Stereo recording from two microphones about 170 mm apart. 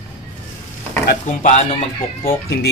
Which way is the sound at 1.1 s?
50° left (ahead or behind).